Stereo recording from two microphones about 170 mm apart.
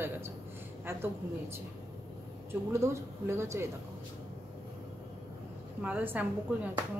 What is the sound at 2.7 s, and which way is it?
Speech, 15° right (ahead or behind).